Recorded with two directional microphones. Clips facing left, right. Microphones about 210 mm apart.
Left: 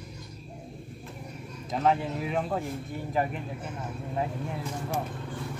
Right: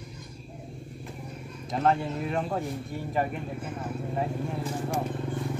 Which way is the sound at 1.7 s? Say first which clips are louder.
Even; centre (ahead or behind).